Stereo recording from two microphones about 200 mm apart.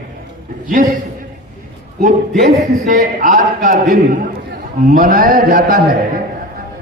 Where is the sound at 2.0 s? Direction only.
40° right (ahead or behind).